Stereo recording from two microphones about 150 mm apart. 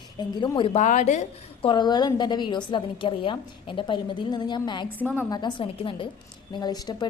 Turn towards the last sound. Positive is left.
turn(degrees=30)  # may be behind; listen again after turning